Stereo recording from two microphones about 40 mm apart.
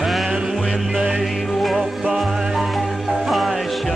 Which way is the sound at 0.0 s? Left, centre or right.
Centre.